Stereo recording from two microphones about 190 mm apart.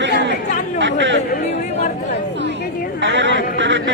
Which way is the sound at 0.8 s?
70° right (ahead or behind).